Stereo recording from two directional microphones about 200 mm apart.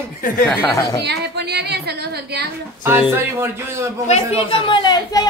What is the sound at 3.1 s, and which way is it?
Speech, 15° right (ahead or behind).